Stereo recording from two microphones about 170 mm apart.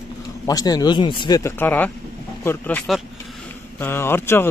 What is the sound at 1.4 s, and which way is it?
Speech, 15° left (ahead or behind).